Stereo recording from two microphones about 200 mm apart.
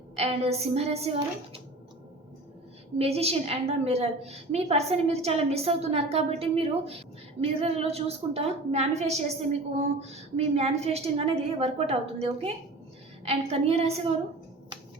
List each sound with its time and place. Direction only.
0.2 s a woman's voice: 30° right (ahead or behind)
3.0 s a woman's voice: 30° right (ahead or behind)